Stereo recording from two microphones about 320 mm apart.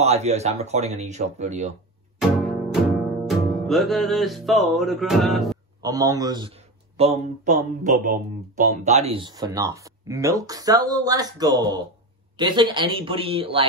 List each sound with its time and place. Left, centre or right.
0.0 s speech: centre
2.1 s music: centre
5.8 s speech: centre